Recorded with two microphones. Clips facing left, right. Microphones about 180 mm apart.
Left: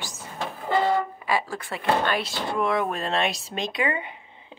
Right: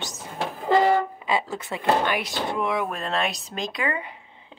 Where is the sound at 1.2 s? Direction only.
20° right (ahead or behind).